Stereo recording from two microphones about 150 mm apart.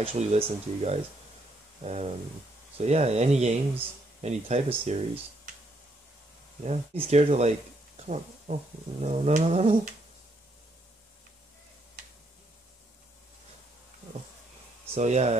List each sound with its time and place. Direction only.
0.0 s speech: 45° right (ahead or behind)
6.6 s speech: 45° right (ahead or behind)
15.0 s speech: 50° right (ahead or behind)